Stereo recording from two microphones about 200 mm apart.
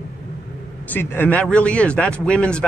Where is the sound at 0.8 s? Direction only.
10° left (ahead or behind).